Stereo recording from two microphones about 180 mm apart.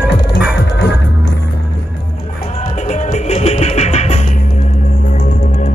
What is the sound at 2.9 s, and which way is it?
Music, 40° left (ahead or behind).